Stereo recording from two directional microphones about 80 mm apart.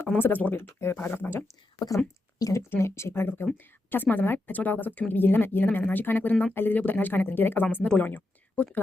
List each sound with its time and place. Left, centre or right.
0.2 s a woman's voice: left
1.9 s a woman's voice: left; by 8.8 s centre